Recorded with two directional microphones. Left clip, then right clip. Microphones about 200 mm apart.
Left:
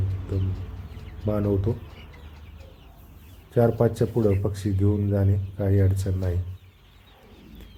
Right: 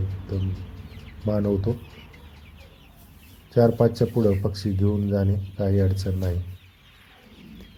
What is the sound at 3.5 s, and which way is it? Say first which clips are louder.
Speech: right 2 dB; 10° right (ahead or behind).